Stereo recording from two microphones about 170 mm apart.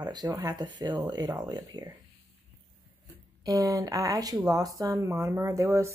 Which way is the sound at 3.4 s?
20° right (ahead or behind).